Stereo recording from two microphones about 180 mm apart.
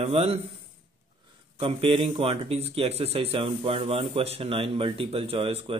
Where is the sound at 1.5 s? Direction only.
30° right (ahead or behind).